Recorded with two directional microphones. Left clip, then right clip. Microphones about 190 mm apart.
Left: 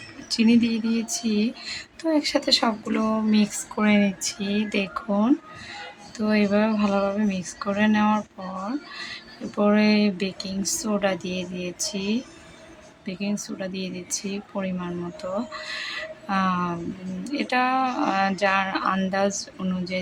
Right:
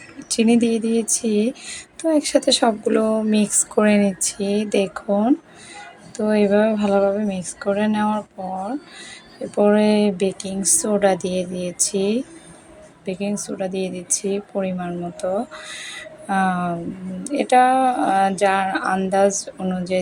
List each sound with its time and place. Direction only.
0.3 s speech: 15° right (ahead or behind)
9.6 s speech: 15° right (ahead or behind)